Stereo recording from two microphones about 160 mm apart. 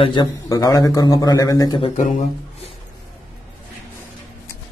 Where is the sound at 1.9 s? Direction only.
55° left (ahead or behind).